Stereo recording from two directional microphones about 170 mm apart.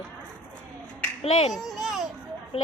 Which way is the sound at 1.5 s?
Centre (ahead or behind).